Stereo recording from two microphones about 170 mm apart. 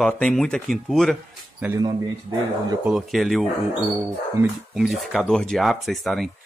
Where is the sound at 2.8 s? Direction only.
Centre (ahead or behind).